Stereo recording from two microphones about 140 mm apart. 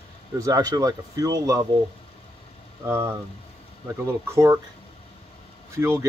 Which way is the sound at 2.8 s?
20° right (ahead or behind).